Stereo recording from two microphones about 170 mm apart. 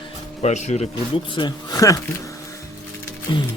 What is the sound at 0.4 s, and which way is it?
Speech, 40° left (ahead or behind).